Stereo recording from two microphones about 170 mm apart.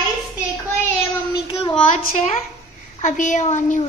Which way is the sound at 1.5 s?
25° left (ahead or behind).